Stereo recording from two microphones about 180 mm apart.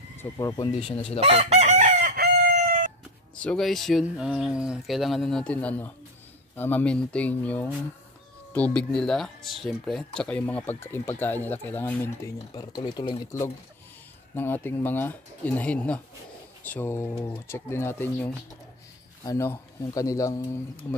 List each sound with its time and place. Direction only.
0.2 s speech: 15° left (ahead or behind)
0.7 s speech: 30° left (ahead or behind)
1.2 s chicken: 35° right (ahead or behind); by 2.8 s 60° right (ahead or behind)
3.3 s speech: 5° left (ahead or behind)
12.5 s speech: 25° left (ahead or behind)
14.3 s speech: 10° left (ahead or behind)